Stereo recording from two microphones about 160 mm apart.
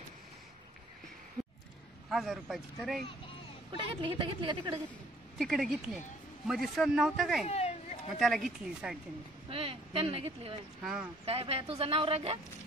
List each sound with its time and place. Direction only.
1.4 s a sound: 20° right (ahead or behind)
2.0 s a sound: centre (ahead or behind)
2.4 s a man's voice: centre (ahead or behind)
3.7 s speech: 30° right (ahead or behind)
5.4 s a man's voice: centre (ahead or behind)
7.4 s a sound: 40° left (ahead or behind)
8.2 s a man's voice: centre (ahead or behind)
9.5 s speech: 35° right (ahead or behind)
10.8 s a man's voice: 5° right (ahead or behind)
11.2 s speech: 40° right (ahead or behind)